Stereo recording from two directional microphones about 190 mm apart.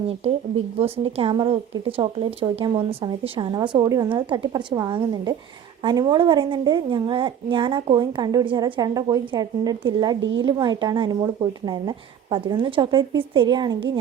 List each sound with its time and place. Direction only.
0.2 s a woman's voice: 30° right (ahead or behind)
10.2 s speech: 75° right (ahead or behind)
10.4 s a woman's voice: 25° right (ahead or behind)